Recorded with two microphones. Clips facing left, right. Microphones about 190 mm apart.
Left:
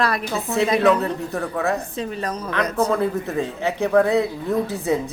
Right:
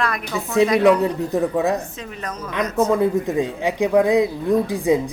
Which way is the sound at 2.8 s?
15° right (ahead or behind).